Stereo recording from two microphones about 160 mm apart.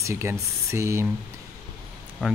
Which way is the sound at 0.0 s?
15° right (ahead or behind).